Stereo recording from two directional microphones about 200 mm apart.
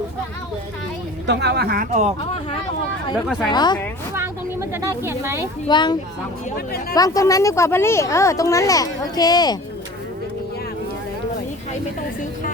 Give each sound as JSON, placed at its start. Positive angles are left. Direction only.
{"t": 1.3, "sound": "speech", "side_deg": -55}
{"t": 3.5, "sound": "a child's voice", "side_deg": 20}
{"t": 4.7, "sound": "speech", "side_deg": -10}
{"t": 5.6, "sound": "a child's voice", "side_deg": 20}